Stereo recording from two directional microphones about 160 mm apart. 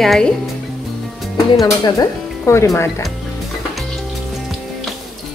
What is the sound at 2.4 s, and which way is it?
Speech, 15° left (ahead or behind).